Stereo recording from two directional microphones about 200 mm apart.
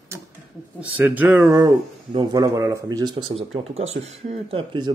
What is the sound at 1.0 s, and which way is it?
Speech, 10° right (ahead or behind).